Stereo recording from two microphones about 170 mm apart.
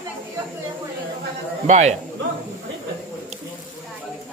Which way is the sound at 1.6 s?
40° right (ahead or behind).